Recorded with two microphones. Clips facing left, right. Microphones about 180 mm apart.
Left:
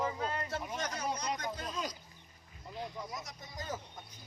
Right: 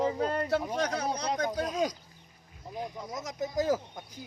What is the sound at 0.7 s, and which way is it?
Speech, 65° right (ahead or behind).